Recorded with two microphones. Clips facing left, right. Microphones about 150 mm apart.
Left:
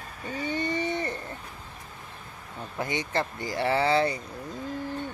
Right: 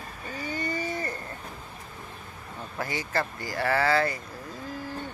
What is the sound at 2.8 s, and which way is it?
Speech, 20° left (ahead or behind).